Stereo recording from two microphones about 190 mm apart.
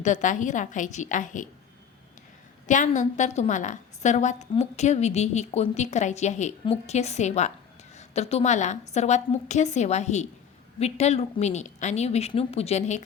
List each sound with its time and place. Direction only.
0.0 s a woman's voice: 40° left (ahead or behind)
2.6 s a woman's voice: 40° left (ahead or behind)